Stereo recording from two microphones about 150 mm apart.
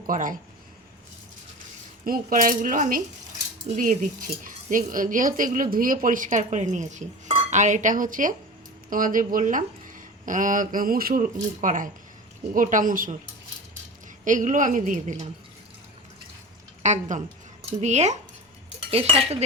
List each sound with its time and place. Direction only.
0.1 s speech: 60° right (ahead or behind)
2.0 s speech: 70° right (ahead or behind)
14.3 s speech: 60° right (ahead or behind)
16.8 s a woman's voice: 55° right (ahead or behind)
18.9 s cutlery: 40° right (ahead or behind)